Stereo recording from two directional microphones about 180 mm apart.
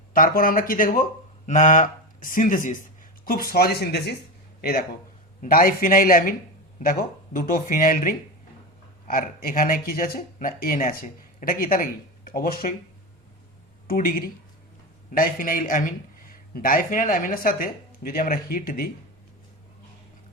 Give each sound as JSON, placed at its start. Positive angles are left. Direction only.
{"t": 0.1, "sound": "speech", "side_deg": 50}
{"t": 7.3, "sound": "speech", "side_deg": 50}
{"t": 13.8, "sound": "speech", "side_deg": 55}